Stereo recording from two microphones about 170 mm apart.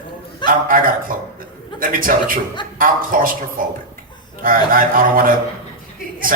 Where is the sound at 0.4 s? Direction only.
55° right (ahead or behind).